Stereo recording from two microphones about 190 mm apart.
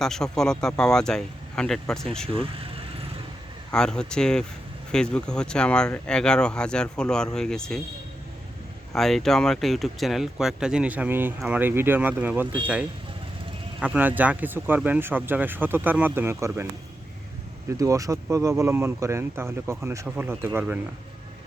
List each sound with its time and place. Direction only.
0.0 s speech: centre (ahead or behind)
2.3 s speech: 30° right (ahead or behind)
3.7 s speech: 5° left (ahead or behind)
8.9 s speech: centre (ahead or behind)
13.7 s speech: 5° right (ahead or behind)
17.7 s speech: 15° right (ahead or behind)